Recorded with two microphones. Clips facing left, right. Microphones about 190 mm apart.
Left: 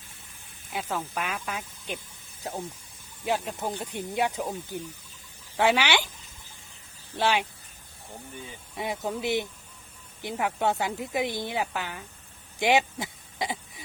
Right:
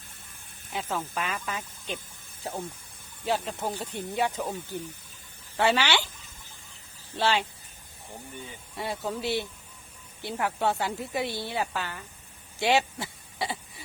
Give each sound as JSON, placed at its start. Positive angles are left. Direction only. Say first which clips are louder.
{"t": 0.7, "sound": "speech", "louder": "even", "side_deg": 10}
{"t": 7.2, "sound": "speech", "louder": "left 1 dB", "side_deg": 15}
{"t": 8.7, "sound": "speech", "louder": "left 1 dB", "side_deg": 15}
{"t": 12.5, "sound": "a sound", "louder": "left 1 dB", "side_deg": 15}